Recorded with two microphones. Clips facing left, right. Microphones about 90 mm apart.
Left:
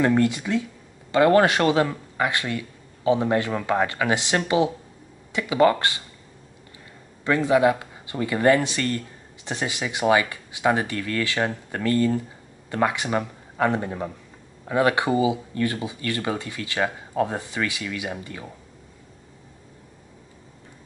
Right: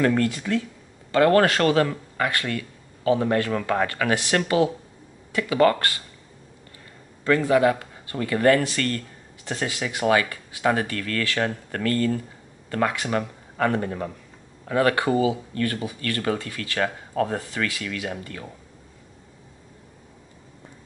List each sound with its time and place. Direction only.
0.0 s speech: 20° left (ahead or behind)
7.2 s speech: 20° left (ahead or behind)